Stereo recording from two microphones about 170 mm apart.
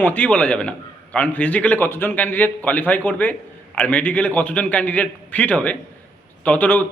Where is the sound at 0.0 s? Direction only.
10° left (ahead or behind).